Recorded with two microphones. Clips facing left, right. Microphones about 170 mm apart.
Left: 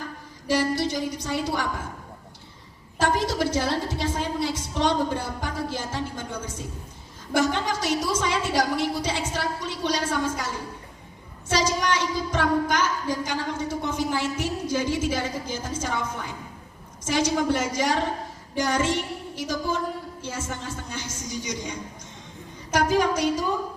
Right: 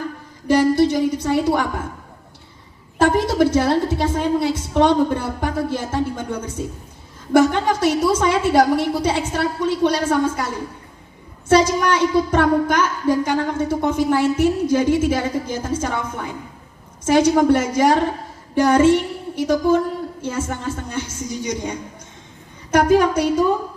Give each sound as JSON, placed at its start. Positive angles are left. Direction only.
{"t": 0.4, "sound": "a woman's voice", "side_deg": -55}
{"t": 3.0, "sound": "a woman's voice", "side_deg": -55}